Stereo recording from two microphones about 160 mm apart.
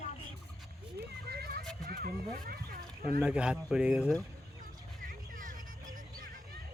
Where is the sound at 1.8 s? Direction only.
70° right (ahead or behind).